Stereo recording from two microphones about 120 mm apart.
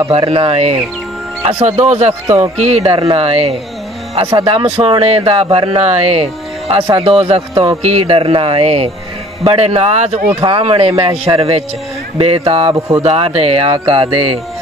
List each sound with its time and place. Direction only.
0.2 s speech: 50° right (ahead or behind)
2.9 s speech: 45° right (ahead or behind)
4.4 s speech: 40° right (ahead or behind)
4.6 s speech: 55° right (ahead or behind)
5.8 s speech: 55° right (ahead or behind)
9.9 s speech: 65° right (ahead or behind)
10.6 s speech: 55° right (ahead or behind)
12.7 s speech: 25° right (ahead or behind)
13.0 s speech: 50° right (ahead or behind)